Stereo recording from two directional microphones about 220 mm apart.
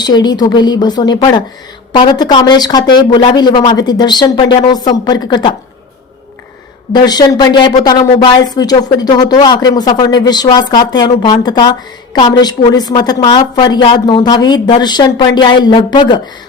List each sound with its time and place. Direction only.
0.0 s speech: 20° left (ahead or behind)
6.9 s speech: 20° left (ahead or behind)